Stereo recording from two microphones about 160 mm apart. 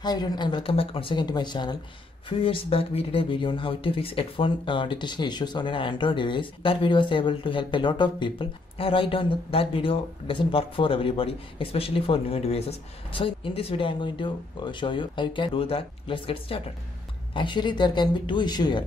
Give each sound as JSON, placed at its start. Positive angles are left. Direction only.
{"t": 0.0, "sound": "speech", "side_deg": 25}